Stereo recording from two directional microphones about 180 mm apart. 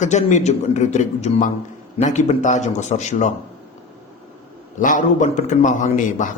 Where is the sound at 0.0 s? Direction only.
40° left (ahead or behind).